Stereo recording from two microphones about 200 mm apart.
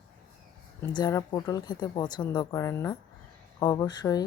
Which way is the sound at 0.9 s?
20° left (ahead or behind).